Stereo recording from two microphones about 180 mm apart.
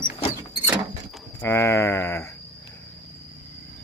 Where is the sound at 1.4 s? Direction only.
15° left (ahead or behind).